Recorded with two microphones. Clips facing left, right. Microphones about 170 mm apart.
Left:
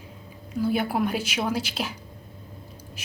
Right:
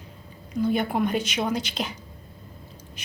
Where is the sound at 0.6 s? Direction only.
5° left (ahead or behind).